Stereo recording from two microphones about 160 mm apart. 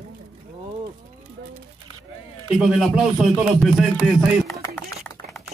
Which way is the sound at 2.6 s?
5° right (ahead or behind).